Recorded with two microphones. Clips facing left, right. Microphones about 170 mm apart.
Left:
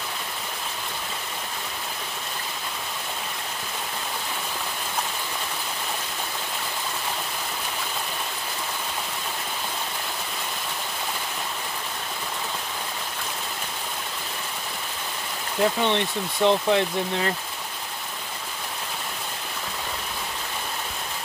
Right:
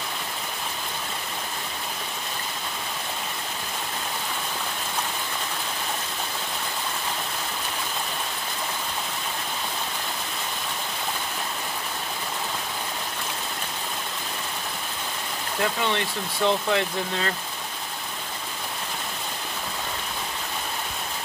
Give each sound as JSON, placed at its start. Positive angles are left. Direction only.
{"t": 15.6, "sound": "speech", "side_deg": 20}